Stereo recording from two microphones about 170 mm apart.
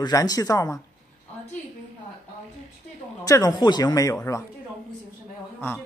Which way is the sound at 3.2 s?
20° left (ahead or behind).